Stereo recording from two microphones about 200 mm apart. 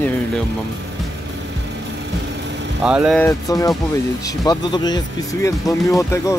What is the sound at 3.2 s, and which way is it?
Speech, 15° left (ahead or behind).